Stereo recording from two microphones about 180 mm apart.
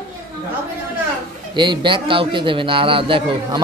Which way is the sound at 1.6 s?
25° right (ahead or behind).